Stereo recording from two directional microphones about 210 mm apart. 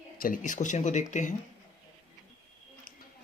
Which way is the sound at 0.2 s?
40° left (ahead or behind).